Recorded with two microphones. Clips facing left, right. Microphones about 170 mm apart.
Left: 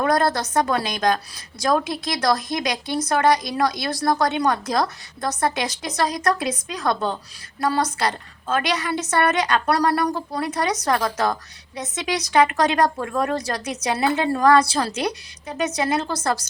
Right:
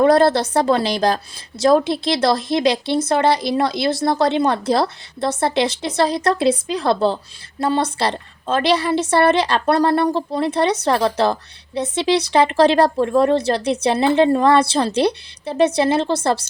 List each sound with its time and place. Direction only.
0.0 s a woman's voice: 30° right (ahead or behind)